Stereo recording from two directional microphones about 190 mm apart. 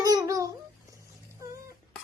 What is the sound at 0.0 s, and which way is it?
Babbling, 20° right (ahead or behind).